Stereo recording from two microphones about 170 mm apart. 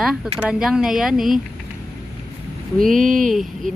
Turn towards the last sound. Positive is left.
turn(degrees=0)  # may be behind; listen again after turning